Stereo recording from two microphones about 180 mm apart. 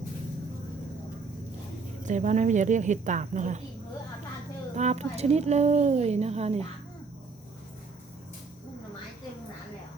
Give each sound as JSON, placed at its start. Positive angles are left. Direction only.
{"t": 2.0, "sound": "speech", "side_deg": -40}
{"t": 4.7, "sound": "a woman's voice", "side_deg": -40}